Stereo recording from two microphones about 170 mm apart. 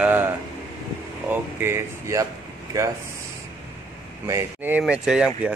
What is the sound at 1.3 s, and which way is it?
Speech, 15° right (ahead or behind).